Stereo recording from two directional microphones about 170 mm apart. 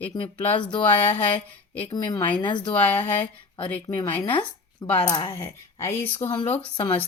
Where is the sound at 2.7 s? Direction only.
10° left (ahead or behind).